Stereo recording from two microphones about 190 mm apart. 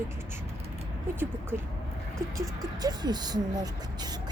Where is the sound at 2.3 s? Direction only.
20° right (ahead or behind).